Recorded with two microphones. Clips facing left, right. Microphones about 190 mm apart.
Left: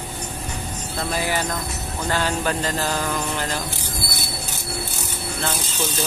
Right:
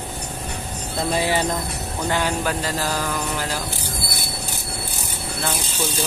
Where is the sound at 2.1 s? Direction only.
15° right (ahead or behind).